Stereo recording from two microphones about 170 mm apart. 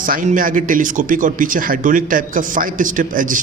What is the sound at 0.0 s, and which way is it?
Speech, 55° right (ahead or behind).